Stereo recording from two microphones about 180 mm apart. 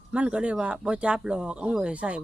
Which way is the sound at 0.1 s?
5° right (ahead or behind).